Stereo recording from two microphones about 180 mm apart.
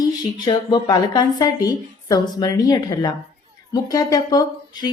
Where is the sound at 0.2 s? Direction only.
25° left (ahead or behind).